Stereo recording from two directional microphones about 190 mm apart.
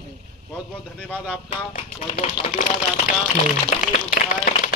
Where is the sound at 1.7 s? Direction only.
35° left (ahead or behind).